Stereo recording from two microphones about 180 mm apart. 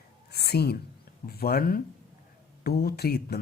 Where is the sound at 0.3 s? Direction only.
65° left (ahead or behind).